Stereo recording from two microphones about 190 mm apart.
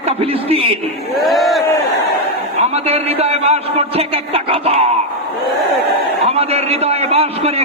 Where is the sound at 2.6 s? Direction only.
35° right (ahead or behind).